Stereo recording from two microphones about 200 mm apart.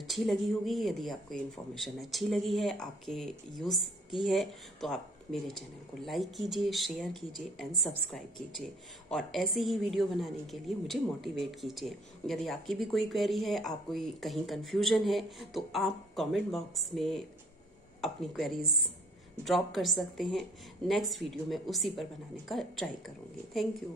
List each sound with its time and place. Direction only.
0.0 s a woman's voice: centre (ahead or behind)